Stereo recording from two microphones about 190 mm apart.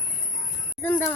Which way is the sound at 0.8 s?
10° left (ahead or behind).